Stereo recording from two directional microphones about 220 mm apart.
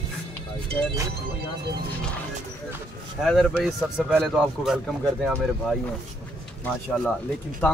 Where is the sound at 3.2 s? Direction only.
Centre (ahead or behind).